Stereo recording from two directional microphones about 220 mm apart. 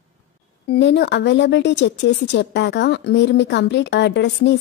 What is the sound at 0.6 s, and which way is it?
Speech, 50° left (ahead or behind).